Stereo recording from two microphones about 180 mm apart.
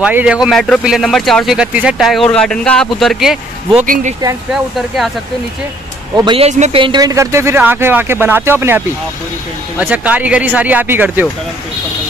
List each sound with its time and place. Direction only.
0.0 s speech: 5° right (ahead or behind)
3.8 s speech: 50° right (ahead or behind)
4.7 s speech: centre (ahead or behind)
6.1 s speech: 30° right (ahead or behind); by 11.2 s 10° right (ahead or behind)